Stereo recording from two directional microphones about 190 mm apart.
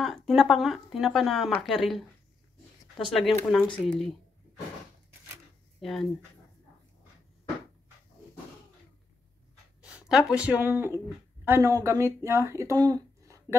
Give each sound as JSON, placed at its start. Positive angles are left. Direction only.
{"t": 0.0, "sound": "speech", "side_deg": 0}
{"t": 3.1, "sound": "speech", "side_deg": 0}
{"t": 5.8, "sound": "speech", "side_deg": 0}
{"t": 9.8, "sound": "a sound", "side_deg": -5}
{"t": 10.3, "sound": "speech", "side_deg": -5}